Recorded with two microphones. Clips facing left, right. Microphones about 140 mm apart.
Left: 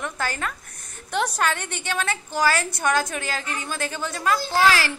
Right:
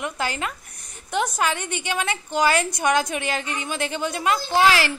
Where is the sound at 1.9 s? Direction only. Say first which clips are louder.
Even; 15° right (ahead or behind).